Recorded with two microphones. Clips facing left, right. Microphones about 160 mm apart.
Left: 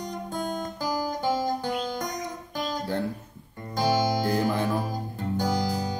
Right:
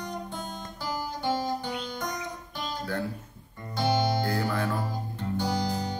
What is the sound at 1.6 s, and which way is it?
Music, 45° left (ahead or behind).